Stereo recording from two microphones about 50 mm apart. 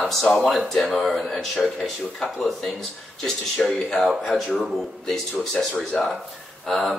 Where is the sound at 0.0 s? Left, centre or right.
Centre.